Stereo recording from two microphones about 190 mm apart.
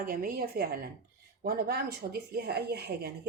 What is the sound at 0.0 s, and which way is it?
A woman's voice, 50° right (ahead or behind).